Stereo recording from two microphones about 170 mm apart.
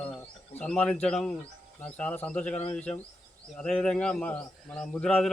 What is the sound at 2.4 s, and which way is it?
Speech, 40° left (ahead or behind).